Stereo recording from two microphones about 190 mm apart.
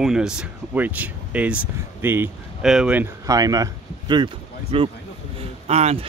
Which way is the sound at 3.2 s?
20° right (ahead or behind).